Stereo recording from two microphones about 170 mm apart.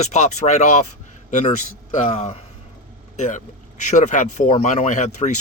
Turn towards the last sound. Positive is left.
turn(degrees=45)  # may be behind; listen again after turning